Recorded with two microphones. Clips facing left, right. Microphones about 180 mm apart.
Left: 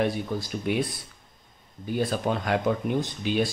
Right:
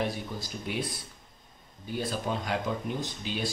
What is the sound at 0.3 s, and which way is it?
Speech, 60° left (ahead or behind).